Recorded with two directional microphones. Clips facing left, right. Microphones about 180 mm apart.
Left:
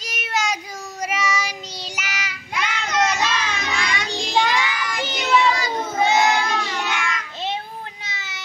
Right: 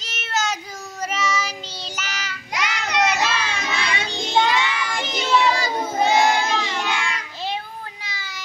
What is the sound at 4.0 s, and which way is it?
Child singing, 25° right (ahead or behind).